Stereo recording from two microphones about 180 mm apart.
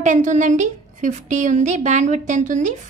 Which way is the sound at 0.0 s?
45° right (ahead or behind).